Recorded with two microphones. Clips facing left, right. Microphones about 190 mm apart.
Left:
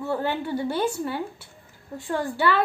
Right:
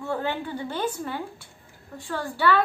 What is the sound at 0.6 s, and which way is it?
Speech, 10° left (ahead or behind).